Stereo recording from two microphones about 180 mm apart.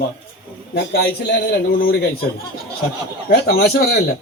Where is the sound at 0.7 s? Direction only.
65° left (ahead or behind).